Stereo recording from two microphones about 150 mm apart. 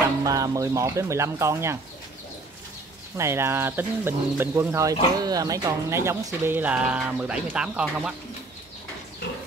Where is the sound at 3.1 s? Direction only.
15° right (ahead or behind).